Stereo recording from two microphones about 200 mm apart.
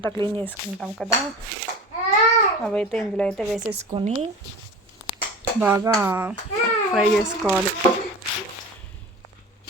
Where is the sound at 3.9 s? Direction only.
35° right (ahead or behind).